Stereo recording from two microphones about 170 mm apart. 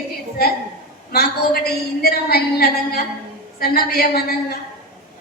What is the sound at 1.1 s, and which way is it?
A woman's voice, 60° left (ahead or behind).